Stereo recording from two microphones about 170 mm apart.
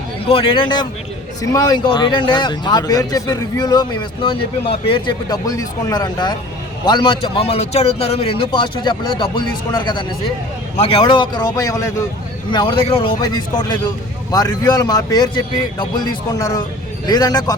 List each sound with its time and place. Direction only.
0.3 s speech: 30° left (ahead or behind)
16.3 s speech: 20° left (ahead or behind)